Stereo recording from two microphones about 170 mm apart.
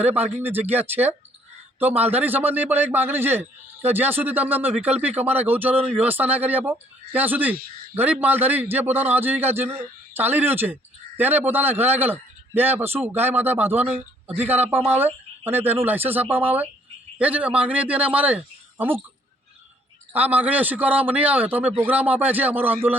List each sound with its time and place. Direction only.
0.4 s a man's voice: 10° right (ahead or behind)
4.8 s speech: 40° right (ahead or behind)
5.0 s a man's voice: 10° right (ahead or behind)
20.1 s a man's voice: 10° right (ahead or behind)